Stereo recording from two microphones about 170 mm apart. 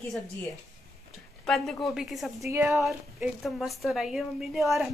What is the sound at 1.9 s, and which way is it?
Speech, centre (ahead or behind).